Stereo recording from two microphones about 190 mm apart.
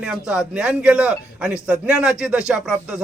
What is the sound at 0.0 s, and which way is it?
A man's voice, 5° right (ahead or behind).